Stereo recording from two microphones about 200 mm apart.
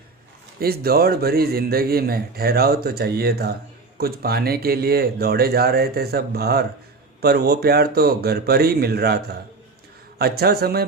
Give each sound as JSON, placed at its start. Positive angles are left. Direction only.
{"t": 0.6, "sound": "a man's voice", "side_deg": -50}